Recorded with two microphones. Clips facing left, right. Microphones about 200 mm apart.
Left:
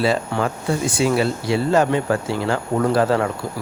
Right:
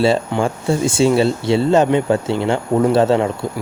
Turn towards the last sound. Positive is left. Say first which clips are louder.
# right 4 dB
turn(degrees=-25)  # may be behind; listen again after turning